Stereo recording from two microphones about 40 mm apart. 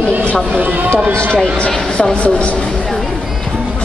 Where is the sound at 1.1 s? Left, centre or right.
Right.